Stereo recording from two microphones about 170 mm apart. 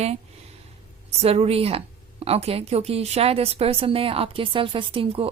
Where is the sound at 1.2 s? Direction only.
35° right (ahead or behind).